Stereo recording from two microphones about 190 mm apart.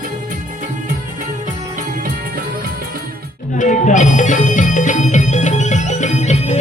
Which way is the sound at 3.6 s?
40° left (ahead or behind).